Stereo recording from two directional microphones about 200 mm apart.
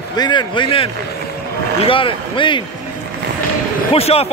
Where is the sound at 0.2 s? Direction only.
25° left (ahead or behind).